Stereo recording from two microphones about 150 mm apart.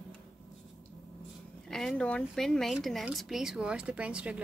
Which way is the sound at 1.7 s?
5° left (ahead or behind).